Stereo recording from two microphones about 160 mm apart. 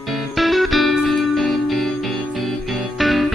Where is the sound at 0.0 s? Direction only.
Centre (ahead or behind).